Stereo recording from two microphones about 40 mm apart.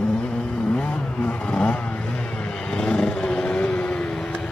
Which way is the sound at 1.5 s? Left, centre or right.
Left.